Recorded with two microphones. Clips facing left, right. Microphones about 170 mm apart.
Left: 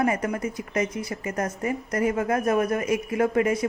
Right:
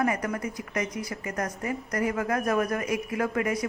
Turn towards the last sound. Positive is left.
turn(degrees=25)  # may be behind; listen again after turning